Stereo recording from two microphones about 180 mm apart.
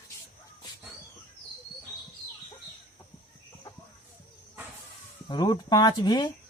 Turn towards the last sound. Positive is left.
turn(degrees=25)  # may be behind; listen again after turning